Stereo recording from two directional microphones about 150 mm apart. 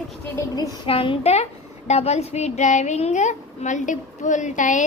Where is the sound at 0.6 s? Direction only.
35° left (ahead or behind).